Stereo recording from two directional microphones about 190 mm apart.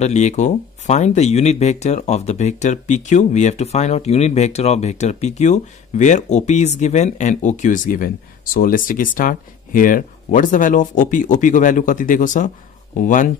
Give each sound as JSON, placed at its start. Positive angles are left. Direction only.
{"t": 0.0, "sound": "speech", "side_deg": 35}